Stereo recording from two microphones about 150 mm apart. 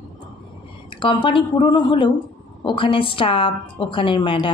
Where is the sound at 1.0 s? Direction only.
35° left (ahead or behind).